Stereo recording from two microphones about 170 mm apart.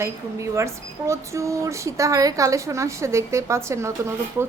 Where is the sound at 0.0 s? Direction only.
15° right (ahead or behind).